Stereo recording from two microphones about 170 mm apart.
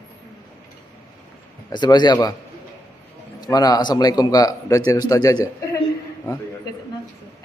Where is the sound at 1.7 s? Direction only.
25° left (ahead or behind).